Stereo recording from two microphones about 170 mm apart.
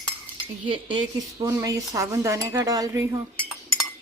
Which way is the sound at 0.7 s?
30° right (ahead or behind).